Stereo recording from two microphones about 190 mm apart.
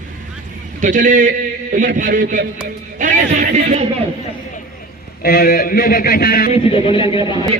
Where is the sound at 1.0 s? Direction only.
45° right (ahead or behind).